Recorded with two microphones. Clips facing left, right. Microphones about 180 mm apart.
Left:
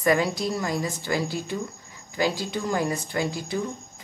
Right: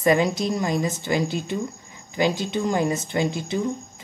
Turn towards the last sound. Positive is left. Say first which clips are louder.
# right 3 dB
turn(degrees=-20)  # may be behind; listen again after turning